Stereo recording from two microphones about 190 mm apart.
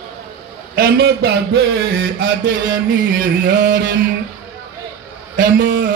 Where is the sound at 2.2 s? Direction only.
45° right (ahead or behind).